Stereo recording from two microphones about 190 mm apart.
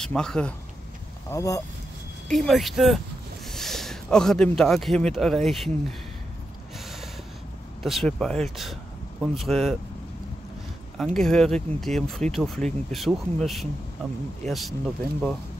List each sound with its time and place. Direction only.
0.0 s speech: 5° left (ahead or behind)
1.3 s speech: 15° left (ahead or behind)
2.2 s speech: centre (ahead or behind)
7.8 s speech: centre (ahead or behind)
11.0 s speech: centre (ahead or behind)